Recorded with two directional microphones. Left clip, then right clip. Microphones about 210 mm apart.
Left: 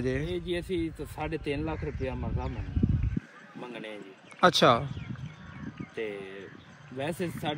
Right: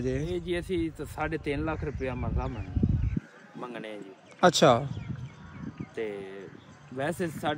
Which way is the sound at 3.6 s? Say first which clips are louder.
Right 2 dB; 5° right (ahead or behind).